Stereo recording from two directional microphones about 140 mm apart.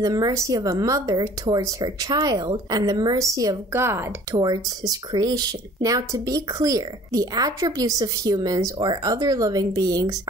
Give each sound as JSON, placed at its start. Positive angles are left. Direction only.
{"t": 0.0, "sound": "speech", "side_deg": -25}